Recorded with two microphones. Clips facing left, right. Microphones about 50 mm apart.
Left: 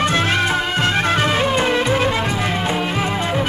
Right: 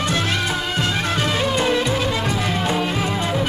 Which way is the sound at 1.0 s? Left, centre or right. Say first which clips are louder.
Left 4 dB; left.